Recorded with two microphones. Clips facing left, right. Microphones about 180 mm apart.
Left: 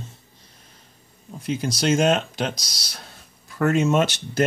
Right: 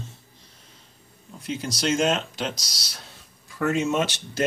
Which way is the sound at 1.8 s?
55° left (ahead or behind).